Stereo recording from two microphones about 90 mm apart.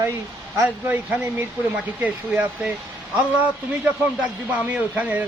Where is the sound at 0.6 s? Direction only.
20° right (ahead or behind).